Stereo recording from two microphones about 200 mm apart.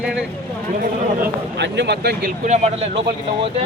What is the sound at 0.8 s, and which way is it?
A man's voice, 55° right (ahead or behind).